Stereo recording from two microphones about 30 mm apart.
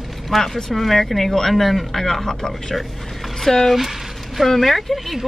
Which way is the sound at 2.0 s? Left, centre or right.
Centre.